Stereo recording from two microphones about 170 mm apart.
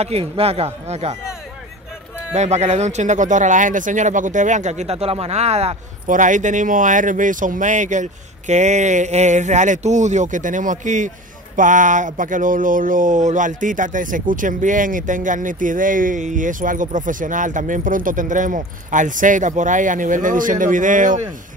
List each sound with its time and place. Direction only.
0.0 s speech: 35° right (ahead or behind)
2.3 s speech: 40° right (ahead or behind)